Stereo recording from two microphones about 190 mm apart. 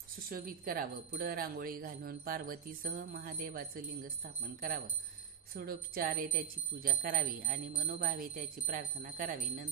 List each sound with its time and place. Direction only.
0.3 s speech: 50° right (ahead or behind)